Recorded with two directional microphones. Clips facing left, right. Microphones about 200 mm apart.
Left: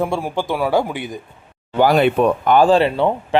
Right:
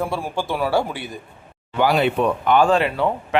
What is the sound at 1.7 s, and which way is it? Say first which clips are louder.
Speech: left 4 dB; 45° left (ahead or behind).